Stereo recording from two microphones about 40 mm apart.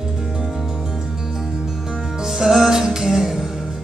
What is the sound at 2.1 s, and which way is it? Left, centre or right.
Music, centre.